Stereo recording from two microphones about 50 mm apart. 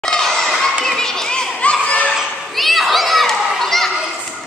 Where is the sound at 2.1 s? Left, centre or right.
Centre.